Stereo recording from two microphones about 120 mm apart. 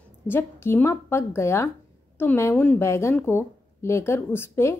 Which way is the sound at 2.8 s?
20° left (ahead or behind).